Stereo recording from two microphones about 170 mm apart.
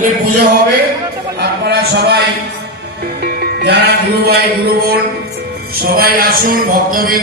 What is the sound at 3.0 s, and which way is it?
Music, 65° right (ahead or behind).